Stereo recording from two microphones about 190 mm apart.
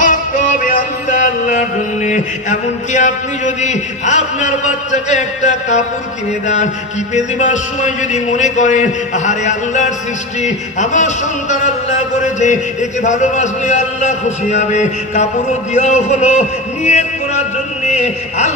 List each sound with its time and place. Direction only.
0.0 s music: 45° left (ahead or behind)
2.9 s a man's voice: 40° left (ahead or behind)
13.0 s a man's voice: 40° left (ahead or behind)
17.8 s a sound: 40° left (ahead or behind)